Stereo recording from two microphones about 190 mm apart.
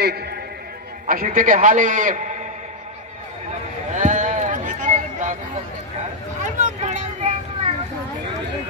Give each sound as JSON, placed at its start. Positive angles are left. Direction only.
{"t": 0.0, "sound": "a man's voice", "side_deg": -55}
{"t": 3.9, "sound": "sheep", "side_deg": -40}
{"t": 6.4, "sound": "a sound", "side_deg": -40}